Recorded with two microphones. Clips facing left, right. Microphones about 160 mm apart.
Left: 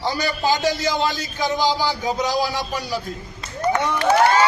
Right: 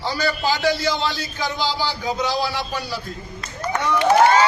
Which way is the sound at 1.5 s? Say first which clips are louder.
Left 5 dB; 45° left (ahead or behind).